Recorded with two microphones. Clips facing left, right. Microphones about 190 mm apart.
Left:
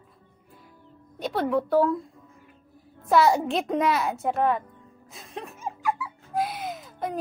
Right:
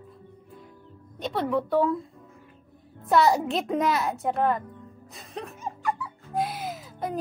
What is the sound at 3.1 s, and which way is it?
Speech, centre (ahead or behind).